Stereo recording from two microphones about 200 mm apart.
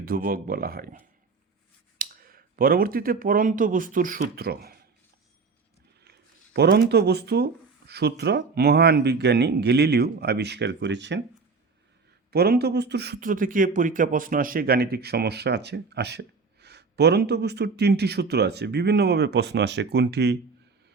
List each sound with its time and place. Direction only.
0.0 s speech: 45° right (ahead or behind)
6.1 s speech: 55° right (ahead or behind)
12.3 s speech: 50° right (ahead or behind)